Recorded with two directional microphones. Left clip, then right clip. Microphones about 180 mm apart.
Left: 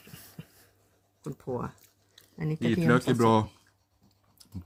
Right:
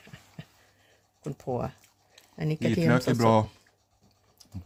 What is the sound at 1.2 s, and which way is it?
Speech, 45° right (ahead or behind).